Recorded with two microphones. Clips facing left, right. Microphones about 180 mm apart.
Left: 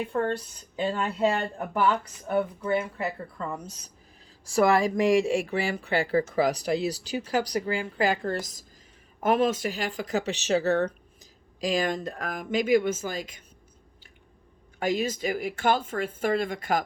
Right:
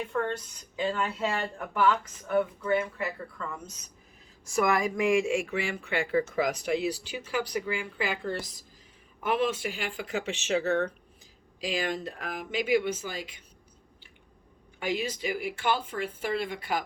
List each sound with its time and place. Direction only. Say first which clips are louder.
0.1 s speech: left 3 dB; 35° left (ahead or behind)
14.8 s speech: left 4 dB; 45° left (ahead or behind)